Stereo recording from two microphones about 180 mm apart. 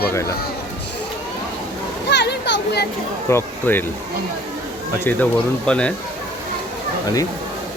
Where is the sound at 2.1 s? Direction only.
70° left (ahead or behind).